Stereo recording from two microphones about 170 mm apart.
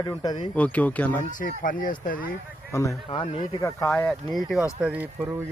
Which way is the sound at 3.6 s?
15° left (ahead or behind).